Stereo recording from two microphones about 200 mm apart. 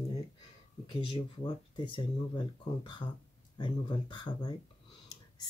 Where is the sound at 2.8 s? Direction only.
25° left (ahead or behind).